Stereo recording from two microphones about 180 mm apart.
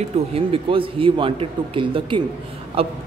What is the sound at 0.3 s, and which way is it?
A man's voice, 30° right (ahead or behind).